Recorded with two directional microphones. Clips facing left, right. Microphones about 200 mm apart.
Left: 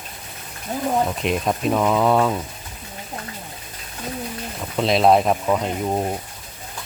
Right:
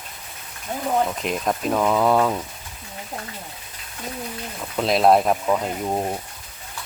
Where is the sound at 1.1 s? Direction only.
5° left (ahead or behind).